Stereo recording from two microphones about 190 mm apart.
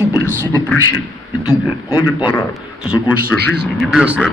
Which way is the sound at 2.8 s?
5° right (ahead or behind).